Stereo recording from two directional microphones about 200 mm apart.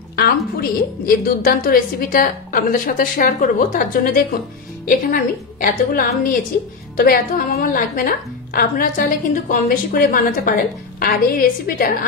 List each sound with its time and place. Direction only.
0.1 s a woman's voice: 50° left (ahead or behind)